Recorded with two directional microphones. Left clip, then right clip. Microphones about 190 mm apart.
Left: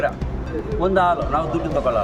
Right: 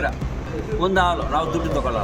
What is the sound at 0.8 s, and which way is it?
Speech, 10° left (ahead or behind).